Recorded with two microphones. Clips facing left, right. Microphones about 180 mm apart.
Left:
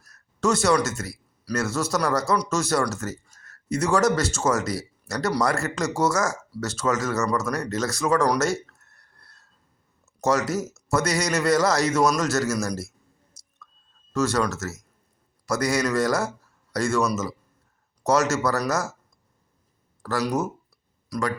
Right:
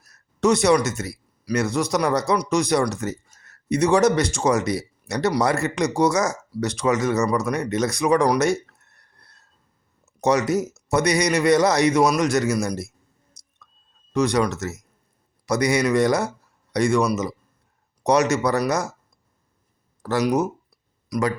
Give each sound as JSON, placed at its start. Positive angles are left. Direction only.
{"t": 0.0, "sound": "a sound", "side_deg": -20}
{"t": 1.5, "sound": "speech", "side_deg": -15}
{"t": 8.7, "sound": "a sound", "side_deg": -20}
{"t": 10.2, "sound": "speech", "side_deg": -20}
{"t": 14.1, "sound": "speech", "side_deg": -15}
{"t": 20.0, "sound": "speech", "side_deg": -20}